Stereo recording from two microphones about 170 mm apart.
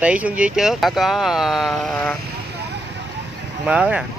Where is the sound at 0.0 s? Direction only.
5° right (ahead or behind).